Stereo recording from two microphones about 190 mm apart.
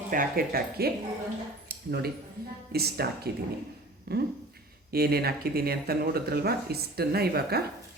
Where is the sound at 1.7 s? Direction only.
55° right (ahead or behind).